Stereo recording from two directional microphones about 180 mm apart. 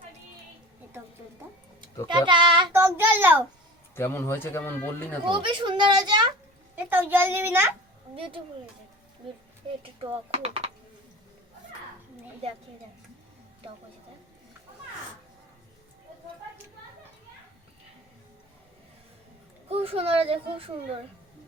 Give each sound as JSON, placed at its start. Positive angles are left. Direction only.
{"t": 2.0, "sound": "a woman's voice", "side_deg": -25}
{"t": 2.7, "sound": "a child's voice", "side_deg": -15}
{"t": 3.9, "sound": "a man's voice", "side_deg": 15}
{"t": 5.2, "sound": "a woman's voice", "side_deg": -30}
{"t": 6.7, "sound": "a child's voice", "side_deg": -10}
{"t": 8.1, "sound": "a woman's voice", "side_deg": -30}
{"t": 9.8, "sound": "a child's voice", "side_deg": -30}
{"t": 19.6, "sound": "a child's voice", "side_deg": -35}